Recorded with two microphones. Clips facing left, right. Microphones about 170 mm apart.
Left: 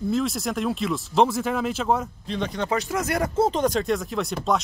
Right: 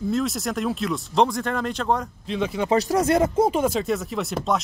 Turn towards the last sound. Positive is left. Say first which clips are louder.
# even
turn(degrees=0)  # may be behind; listen again after turning